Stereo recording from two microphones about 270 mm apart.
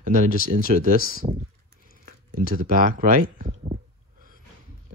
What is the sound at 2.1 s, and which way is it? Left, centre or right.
Speech, right.